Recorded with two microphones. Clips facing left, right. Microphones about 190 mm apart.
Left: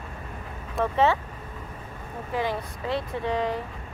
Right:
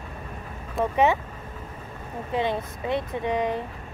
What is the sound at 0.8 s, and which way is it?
Speech, 15° right (ahead or behind).